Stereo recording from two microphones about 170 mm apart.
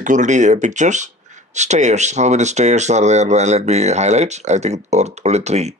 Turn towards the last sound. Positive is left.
turn(degrees=-40)  # may be behind; listen again after turning